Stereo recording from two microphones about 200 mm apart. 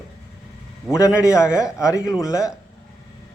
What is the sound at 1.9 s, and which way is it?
Speech, 15° left (ahead or behind).